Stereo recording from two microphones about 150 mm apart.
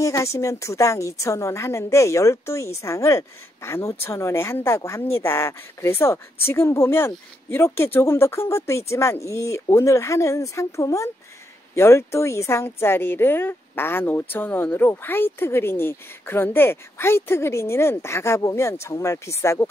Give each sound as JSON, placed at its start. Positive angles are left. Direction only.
{"t": 0.0, "sound": "a woman's voice", "side_deg": 20}